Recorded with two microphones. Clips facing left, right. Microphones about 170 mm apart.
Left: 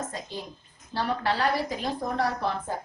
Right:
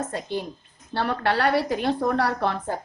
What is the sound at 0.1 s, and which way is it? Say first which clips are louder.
A woman's voice: right 7 dB; 65° right (ahead or behind).